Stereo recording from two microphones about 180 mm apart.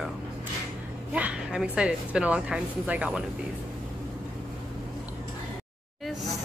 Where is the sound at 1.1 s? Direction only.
5° right (ahead or behind).